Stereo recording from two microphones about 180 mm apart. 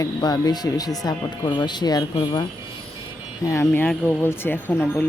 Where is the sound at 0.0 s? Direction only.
25° left (ahead or behind).